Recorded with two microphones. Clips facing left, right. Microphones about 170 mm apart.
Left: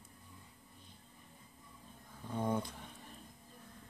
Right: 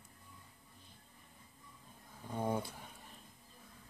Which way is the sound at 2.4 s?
10° right (ahead or behind).